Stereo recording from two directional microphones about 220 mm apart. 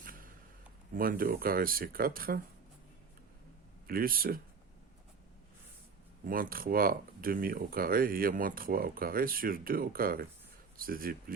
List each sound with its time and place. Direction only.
0.9 s speech: 40° right (ahead or behind)
3.8 s speech: 40° right (ahead or behind)
6.2 s speech: 40° right (ahead or behind)